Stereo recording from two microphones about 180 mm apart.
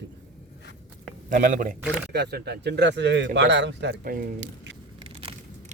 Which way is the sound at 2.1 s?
65° right (ahead or behind).